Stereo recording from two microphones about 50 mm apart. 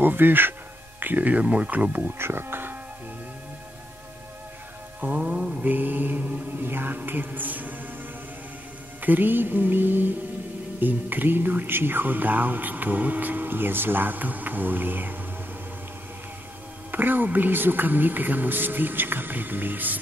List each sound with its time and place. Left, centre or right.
0.0 s speech: right
2.1 s speech: right
5.0 s speech: right
6.6 s music: right
9.0 s speech: right
16.9 s speech: right